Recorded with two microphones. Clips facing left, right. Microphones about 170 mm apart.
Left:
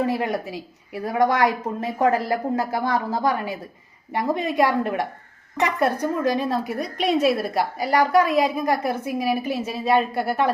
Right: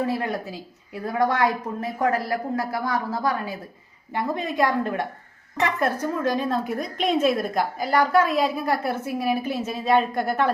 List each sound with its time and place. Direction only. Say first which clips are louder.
0.0 s a woman's voice: left 2 dB; 20° left (ahead or behind)
4.1 s a woman's voice: left 3 dB; 15° left (ahead or behind)